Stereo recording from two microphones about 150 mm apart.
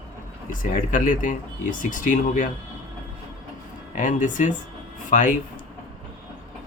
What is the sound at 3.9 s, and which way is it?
Speech, 55° left (ahead or behind).